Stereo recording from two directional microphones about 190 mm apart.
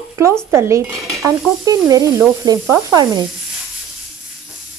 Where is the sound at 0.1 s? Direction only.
15° right (ahead or behind).